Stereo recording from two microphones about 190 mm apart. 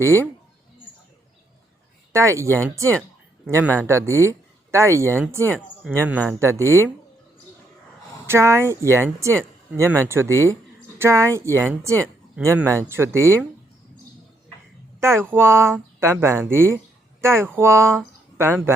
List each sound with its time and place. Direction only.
2.1 s speech: 15° right (ahead or behind)
8.3 s speech: 15° right (ahead or behind)
15.0 s speech: 15° right (ahead or behind)